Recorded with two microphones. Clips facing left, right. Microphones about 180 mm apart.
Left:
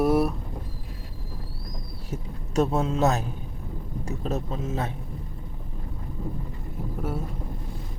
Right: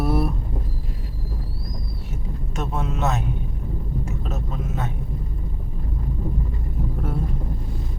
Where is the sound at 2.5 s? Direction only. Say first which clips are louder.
Left 5 dB; 30° left (ahead or behind).